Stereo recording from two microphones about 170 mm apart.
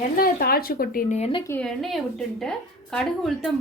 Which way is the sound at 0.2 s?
60° left (ahead or behind).